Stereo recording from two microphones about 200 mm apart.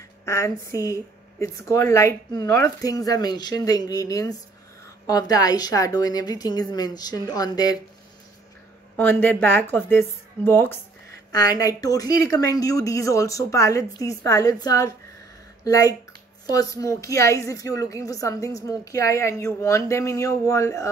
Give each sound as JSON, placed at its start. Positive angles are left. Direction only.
{"t": 0.2, "sound": "a woman's voice", "side_deg": 15}
{"t": 8.9, "sound": "a woman's voice", "side_deg": 10}